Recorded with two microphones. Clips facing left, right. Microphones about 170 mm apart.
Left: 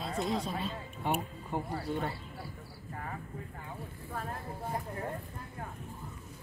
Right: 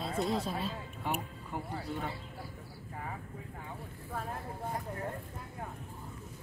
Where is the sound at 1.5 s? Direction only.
25° left (ahead or behind).